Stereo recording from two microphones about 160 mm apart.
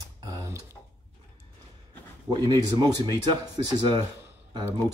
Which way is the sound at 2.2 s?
25° right (ahead or behind).